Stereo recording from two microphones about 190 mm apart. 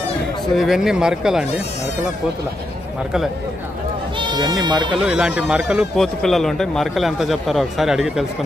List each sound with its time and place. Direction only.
0.6 s speech: centre (ahead or behind)
4.2 s bleat: 20° right (ahead or behind)
4.6 s speech: 20° right (ahead or behind)
4.9 s speech: 5° right (ahead or behind)